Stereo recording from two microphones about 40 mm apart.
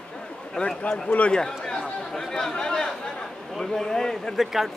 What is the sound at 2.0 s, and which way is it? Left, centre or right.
Speech, centre.